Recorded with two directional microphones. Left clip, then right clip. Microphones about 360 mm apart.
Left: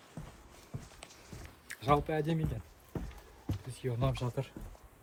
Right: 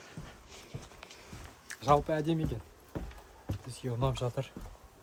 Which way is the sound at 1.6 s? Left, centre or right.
Centre.